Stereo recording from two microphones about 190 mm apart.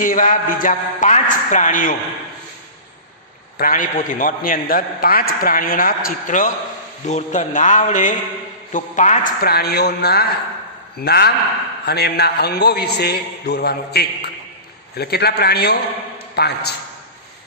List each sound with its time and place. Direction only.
0.0 s a man's voice: 45° left (ahead or behind)
3.5 s a man's voice: 45° left (ahead or behind)